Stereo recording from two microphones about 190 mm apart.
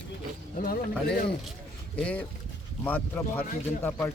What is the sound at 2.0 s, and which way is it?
Speech, 5° left (ahead or behind).